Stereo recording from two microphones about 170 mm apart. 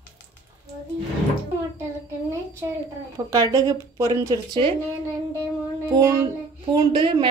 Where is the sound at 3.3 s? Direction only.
20° right (ahead or behind).